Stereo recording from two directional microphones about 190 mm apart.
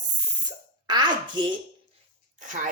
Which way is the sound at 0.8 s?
20° right (ahead or behind).